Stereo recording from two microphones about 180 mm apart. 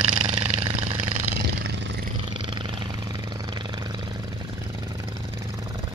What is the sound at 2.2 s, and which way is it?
Vehicle, 30° right (ahead or behind).